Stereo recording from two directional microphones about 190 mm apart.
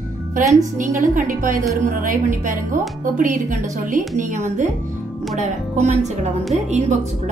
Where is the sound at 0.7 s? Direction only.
40° right (ahead or behind).